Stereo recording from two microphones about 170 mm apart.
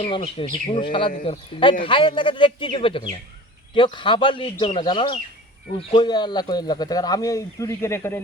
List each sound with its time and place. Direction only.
0.0 s speech: 30° left (ahead or behind); by 8.2 s 15° left (ahead or behind)